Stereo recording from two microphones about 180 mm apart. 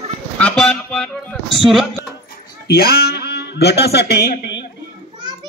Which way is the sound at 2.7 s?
60° left (ahead or behind).